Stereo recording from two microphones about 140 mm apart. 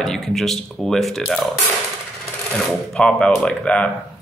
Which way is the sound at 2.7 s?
5° left (ahead or behind).